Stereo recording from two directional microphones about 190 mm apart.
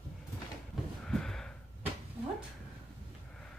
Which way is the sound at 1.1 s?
5° left (ahead or behind).